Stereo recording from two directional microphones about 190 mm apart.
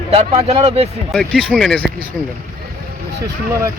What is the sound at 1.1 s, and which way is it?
Speech, 5° left (ahead or behind).